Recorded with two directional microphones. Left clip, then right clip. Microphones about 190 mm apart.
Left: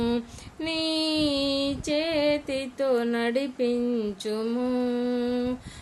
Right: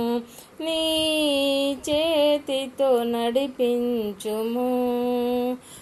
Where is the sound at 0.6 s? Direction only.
10° left (ahead or behind).